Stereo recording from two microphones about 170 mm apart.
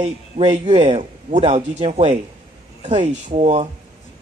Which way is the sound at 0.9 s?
40° right (ahead or behind).